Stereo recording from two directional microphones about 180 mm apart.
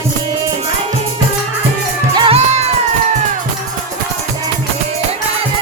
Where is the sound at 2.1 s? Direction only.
25° right (ahead or behind).